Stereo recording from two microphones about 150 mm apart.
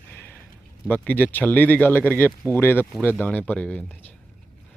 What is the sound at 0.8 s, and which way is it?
Speech, 10° left (ahead or behind).